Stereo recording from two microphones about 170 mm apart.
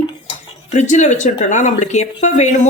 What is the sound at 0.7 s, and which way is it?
Speech, 45° left (ahead or behind).